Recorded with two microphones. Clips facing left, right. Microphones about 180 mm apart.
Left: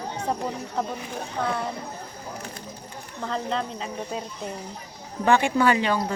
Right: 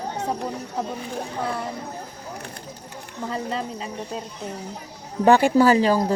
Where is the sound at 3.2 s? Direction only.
5° right (ahead or behind).